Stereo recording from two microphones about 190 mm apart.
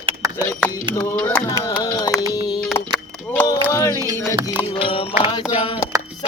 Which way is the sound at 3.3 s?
15° left (ahead or behind).